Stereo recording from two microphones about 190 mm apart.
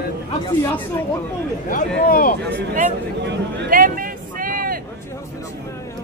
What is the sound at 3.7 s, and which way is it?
Speech, 45° right (ahead or behind).